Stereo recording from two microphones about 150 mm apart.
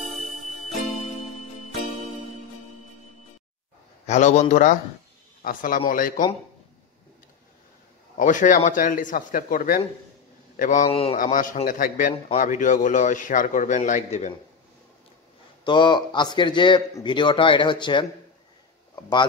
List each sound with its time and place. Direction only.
4.0 s a man's voice: 50° left (ahead or behind)
5.4 s a man's voice: 65° left (ahead or behind)
8.2 s a man's voice: 60° left (ahead or behind)
10.9 s a man's voice: 40° left (ahead or behind)
11.1 s a man's voice: 65° left (ahead or behind)
15.6 s a man's voice: 30° left (ahead or behind)